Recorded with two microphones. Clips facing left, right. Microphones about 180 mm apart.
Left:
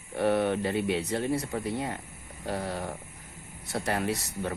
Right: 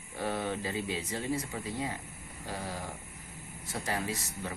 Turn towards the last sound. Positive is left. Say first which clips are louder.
# left 6 dB
turn(degrees=70)  # may be behind; listen again after turning